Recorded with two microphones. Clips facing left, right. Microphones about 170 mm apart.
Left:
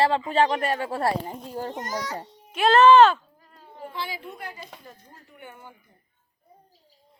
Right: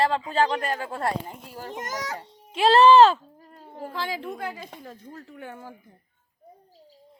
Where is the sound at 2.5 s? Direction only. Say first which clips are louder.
Even; 30° right (ahead or behind).